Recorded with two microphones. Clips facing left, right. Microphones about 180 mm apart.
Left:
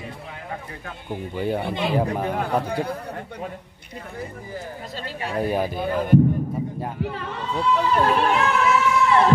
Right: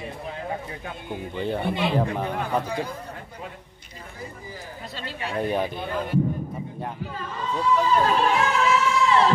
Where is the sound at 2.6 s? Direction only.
60° left (ahead or behind).